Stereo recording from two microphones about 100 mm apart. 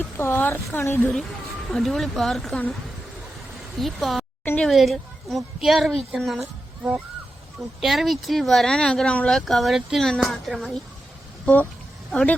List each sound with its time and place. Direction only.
0.0 s speech: 20° left (ahead or behind)
1.7 s speech: centre (ahead or behind)
3.8 s speech: centre (ahead or behind)
7.8 s speech: centre (ahead or behind)
11.4 s speech: 15° left (ahead or behind)